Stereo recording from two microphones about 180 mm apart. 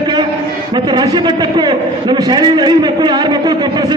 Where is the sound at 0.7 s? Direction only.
25° right (ahead or behind).